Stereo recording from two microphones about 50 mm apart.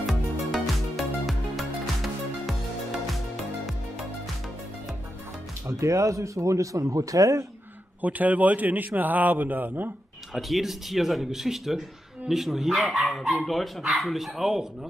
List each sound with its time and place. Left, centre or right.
0.0 s music: centre
5.7 s speech: right
8.0 s a man's voice: right
10.3 s speech: centre